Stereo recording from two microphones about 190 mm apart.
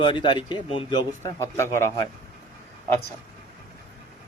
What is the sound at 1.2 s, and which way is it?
Speech, 15° left (ahead or behind).